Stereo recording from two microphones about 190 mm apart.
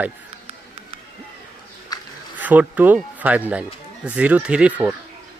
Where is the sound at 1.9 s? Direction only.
20° left (ahead or behind).